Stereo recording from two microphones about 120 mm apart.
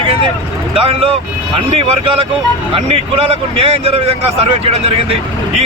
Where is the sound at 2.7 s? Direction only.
50° right (ahead or behind).